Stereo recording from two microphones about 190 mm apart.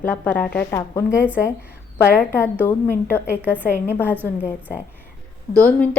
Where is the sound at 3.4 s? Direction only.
10° right (ahead or behind).